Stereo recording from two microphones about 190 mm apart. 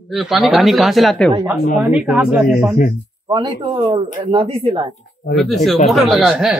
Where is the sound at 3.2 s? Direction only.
25° right (ahead or behind).